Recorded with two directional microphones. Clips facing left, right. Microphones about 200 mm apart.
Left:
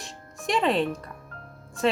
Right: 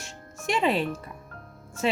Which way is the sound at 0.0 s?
Centre (ahead or behind).